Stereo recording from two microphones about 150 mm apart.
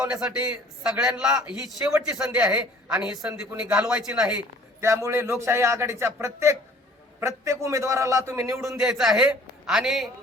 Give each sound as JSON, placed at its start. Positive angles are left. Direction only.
{"t": 0.0, "sound": "a man's voice", "side_deg": -10}
{"t": 4.8, "sound": "a man's voice", "side_deg": -20}
{"t": 8.8, "sound": "a man's voice", "side_deg": 0}